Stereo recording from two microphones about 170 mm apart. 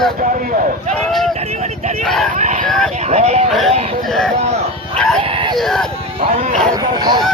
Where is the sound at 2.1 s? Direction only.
Centre (ahead or behind).